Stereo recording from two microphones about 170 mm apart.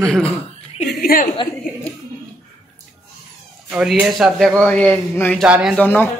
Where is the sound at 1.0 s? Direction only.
60° left (ahead or behind).